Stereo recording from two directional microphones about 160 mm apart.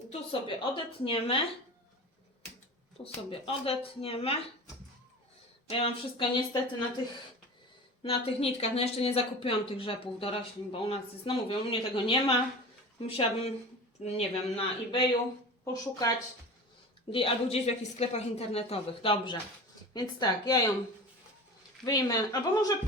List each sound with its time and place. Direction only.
0.1 s speech: 35° left (ahead or behind)
3.0 s speech: 35° left (ahead or behind)
5.6 s speech: 35° left (ahead or behind)
8.0 s speech: 35° left (ahead or behind)
15.6 s speech: 20° left (ahead or behind)
17.1 s speech: 35° left (ahead or behind)
21.8 s speech: 25° left (ahead or behind)